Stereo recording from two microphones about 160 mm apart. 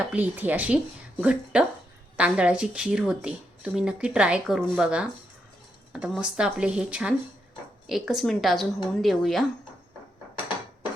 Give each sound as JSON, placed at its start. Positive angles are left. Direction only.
{"t": 0.1, "sound": "speech", "side_deg": -10}